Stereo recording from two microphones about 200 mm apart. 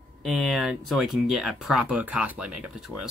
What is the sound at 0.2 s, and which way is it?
Speech, centre (ahead or behind).